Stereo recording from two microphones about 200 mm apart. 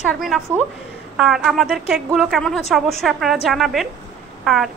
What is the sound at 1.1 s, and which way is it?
A woman's voice, 5° right (ahead or behind).